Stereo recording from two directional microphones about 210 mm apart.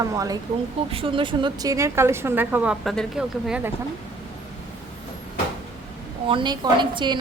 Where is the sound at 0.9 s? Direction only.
25° right (ahead or behind); by 3.7 s 5° right (ahead or behind).